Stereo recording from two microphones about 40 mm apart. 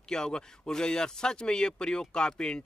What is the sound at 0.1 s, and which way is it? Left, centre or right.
Speech, centre.